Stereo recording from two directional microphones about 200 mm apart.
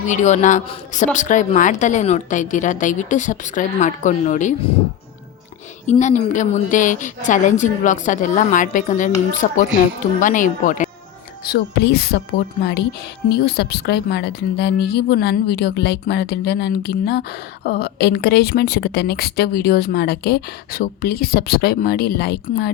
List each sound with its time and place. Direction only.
0.1 s a woman's voice: 35° left (ahead or behind)
5.8 s a woman's voice: 35° left (ahead or behind)
11.4 s speech: 55° left (ahead or behind)
13.3 s a woman's voice: 55° left (ahead or behind)